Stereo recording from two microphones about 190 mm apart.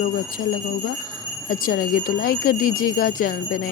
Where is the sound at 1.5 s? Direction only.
50° left (ahead or behind).